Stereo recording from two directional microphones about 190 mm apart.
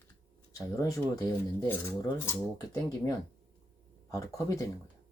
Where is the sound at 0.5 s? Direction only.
15° left (ahead or behind).